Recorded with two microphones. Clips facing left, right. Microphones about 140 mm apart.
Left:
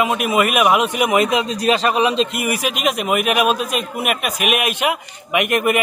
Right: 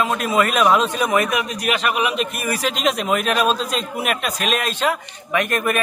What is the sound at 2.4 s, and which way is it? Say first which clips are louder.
A man's voice: left 1 dB; 15° left (ahead or behind).